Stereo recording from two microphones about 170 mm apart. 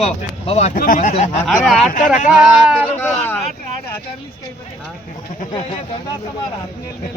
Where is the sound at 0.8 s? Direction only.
55° left (ahead or behind).